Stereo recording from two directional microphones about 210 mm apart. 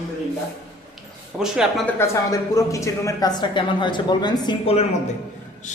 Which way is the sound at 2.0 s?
15° left (ahead or behind).